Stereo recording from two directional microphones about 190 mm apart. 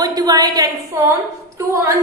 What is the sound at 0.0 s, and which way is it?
A woman's voice, 20° right (ahead or behind).